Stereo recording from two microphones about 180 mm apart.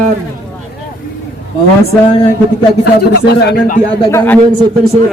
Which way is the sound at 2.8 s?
65° left (ahead or behind).